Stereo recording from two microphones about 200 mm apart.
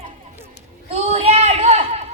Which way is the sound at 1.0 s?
30° right (ahead or behind).